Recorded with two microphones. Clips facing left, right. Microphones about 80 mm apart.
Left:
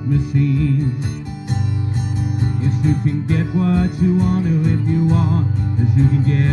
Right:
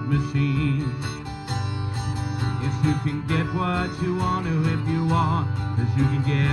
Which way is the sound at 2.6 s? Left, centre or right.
Left.